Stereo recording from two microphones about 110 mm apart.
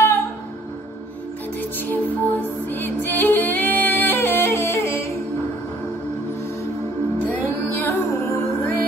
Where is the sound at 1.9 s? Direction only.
15° left (ahead or behind).